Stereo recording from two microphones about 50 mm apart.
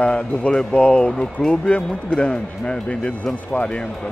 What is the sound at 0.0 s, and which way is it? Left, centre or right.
Speech, left.